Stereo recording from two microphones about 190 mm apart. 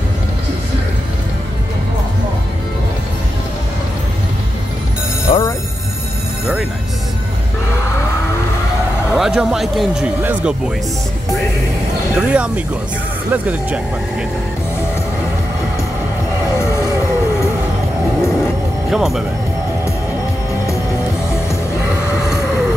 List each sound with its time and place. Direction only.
5.3 s music: 35° left (ahead or behind)
9.1 s speech: 5° right (ahead or behind)
12.2 s speech: 5° right (ahead or behind)
16.5 s music: 15° left (ahead or behind)
18.9 s speech: centre (ahead or behind)